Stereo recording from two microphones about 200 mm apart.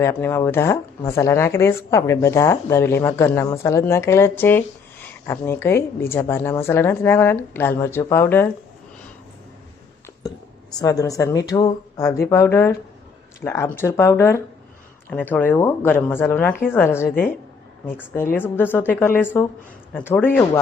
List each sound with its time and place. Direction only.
0.0 s speech: 10° left (ahead or behind)
10.2 s speech: 20° left (ahead or behind)